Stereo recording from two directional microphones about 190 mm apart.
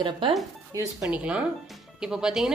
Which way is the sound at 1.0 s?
5° right (ahead or behind).